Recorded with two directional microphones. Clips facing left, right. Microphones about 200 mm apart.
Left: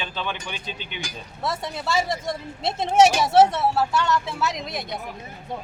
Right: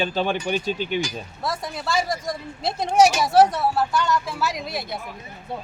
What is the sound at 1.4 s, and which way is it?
Speech, centre (ahead or behind).